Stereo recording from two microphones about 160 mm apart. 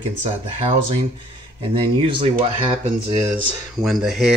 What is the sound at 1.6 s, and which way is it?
Speech, 35° right (ahead or behind).